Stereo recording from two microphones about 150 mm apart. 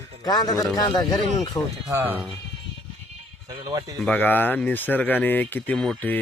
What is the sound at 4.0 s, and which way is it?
Speech, 10° left (ahead or behind).